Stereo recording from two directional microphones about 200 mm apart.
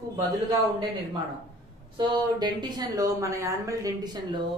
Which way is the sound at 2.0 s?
20° right (ahead or behind).